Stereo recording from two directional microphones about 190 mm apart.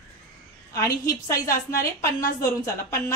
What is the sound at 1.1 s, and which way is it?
A woman's voice, 15° left (ahead or behind).